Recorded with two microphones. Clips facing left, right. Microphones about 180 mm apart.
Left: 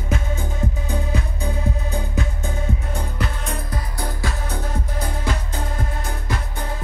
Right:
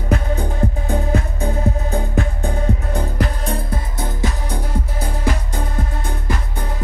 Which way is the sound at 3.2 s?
35° right (ahead or behind).